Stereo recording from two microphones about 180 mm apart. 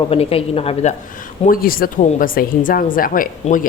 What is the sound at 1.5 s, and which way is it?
Speech, 55° left (ahead or behind).